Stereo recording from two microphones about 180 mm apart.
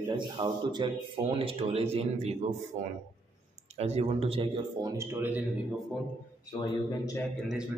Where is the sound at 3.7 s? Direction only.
35° right (ahead or behind).